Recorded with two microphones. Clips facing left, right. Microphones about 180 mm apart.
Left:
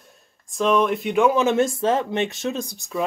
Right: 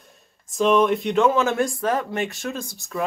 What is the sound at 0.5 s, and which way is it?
Speech, centre (ahead or behind).